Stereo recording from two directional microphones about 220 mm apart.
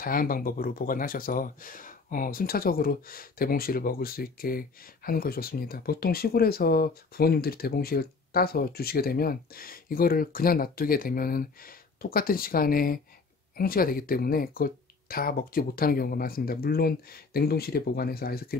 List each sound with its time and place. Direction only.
0.0 s speech: 40° left (ahead or behind)